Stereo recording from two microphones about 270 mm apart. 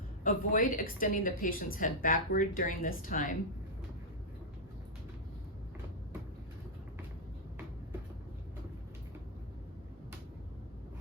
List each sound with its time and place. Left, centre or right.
0.3 s a woman's voice: left